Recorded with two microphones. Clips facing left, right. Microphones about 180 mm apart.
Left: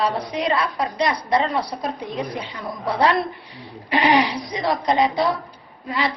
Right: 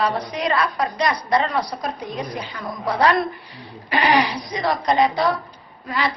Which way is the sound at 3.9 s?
25° left (ahead or behind).